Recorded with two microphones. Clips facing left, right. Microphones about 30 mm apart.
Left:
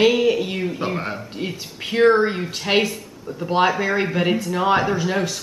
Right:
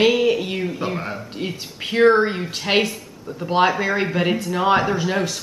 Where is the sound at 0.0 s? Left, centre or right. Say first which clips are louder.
Even; centre.